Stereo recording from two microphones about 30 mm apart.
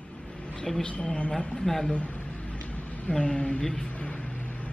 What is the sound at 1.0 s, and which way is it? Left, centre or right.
Speech, left.